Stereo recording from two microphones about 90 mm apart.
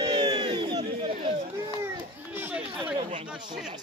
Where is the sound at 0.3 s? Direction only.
60° right (ahead or behind).